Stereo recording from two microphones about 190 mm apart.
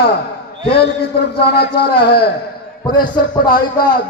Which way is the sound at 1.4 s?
60° left (ahead or behind).